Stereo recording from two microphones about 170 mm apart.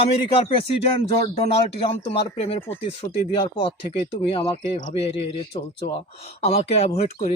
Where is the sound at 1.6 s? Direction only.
30° left (ahead or behind).